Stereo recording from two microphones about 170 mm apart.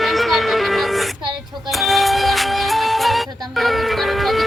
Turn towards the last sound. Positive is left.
turn(degrees=0)  # may be behind; listen again after turning